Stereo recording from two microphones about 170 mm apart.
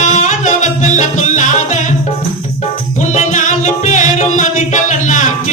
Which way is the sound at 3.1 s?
45° left (ahead or behind).